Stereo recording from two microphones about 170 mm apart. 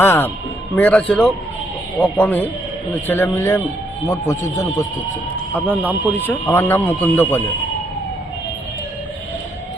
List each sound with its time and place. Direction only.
0.0 s speech: 15° left (ahead or behind)
5.5 s speech: 10° right (ahead or behind)
6.1 s speech: 10° left (ahead or behind)